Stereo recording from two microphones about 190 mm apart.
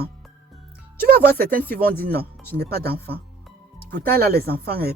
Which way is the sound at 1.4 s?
50° right (ahead or behind).